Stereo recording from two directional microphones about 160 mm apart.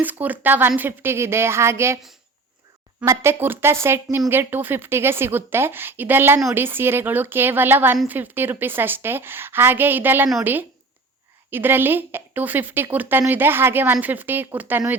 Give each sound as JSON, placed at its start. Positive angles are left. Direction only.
{"t": 0.0, "sound": "speech", "side_deg": -10}
{"t": 3.0, "sound": "speech", "side_deg": -15}